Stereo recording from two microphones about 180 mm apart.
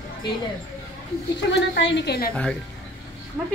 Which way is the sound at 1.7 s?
80° left.